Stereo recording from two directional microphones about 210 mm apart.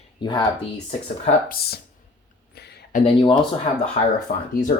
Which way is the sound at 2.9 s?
25° left (ahead or behind).